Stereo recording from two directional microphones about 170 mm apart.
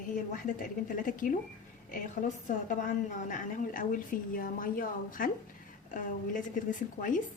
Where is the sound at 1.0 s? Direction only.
55° left (ahead or behind).